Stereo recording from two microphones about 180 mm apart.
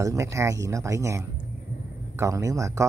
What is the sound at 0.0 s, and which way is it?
Speech, 15° right (ahead or behind).